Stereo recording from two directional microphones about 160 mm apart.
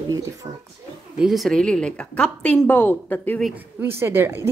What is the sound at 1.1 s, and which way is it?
A woman's voice, centre (ahead or behind).